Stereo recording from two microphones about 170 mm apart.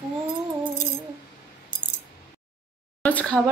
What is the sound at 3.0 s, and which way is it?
Speech, 10° left (ahead or behind).